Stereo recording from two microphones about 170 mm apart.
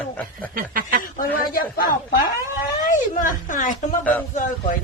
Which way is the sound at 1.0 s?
55° left (ahead or behind).